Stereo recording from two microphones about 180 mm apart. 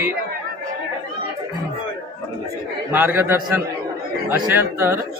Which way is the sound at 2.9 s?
10° right (ahead or behind).